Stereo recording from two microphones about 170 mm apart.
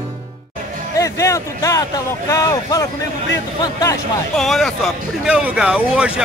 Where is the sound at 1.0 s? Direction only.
15° left (ahead or behind).